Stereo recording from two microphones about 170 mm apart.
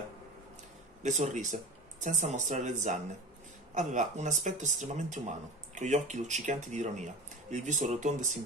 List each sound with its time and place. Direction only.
1.0 s speech: 45° right (ahead or behind)